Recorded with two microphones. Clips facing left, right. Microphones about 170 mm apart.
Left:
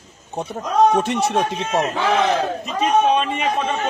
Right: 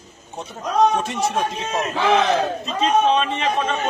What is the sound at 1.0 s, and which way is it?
Speech, 65° left (ahead or behind).